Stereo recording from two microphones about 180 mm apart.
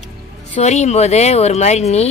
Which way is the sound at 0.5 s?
40° left (ahead or behind).